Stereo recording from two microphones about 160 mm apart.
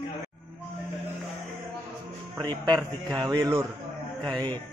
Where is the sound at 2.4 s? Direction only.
30° right (ahead or behind).